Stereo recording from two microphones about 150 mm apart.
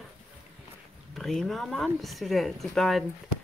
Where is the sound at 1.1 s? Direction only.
Centre (ahead or behind).